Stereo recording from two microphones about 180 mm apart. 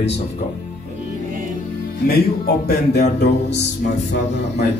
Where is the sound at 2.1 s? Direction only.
60° left (ahead or behind).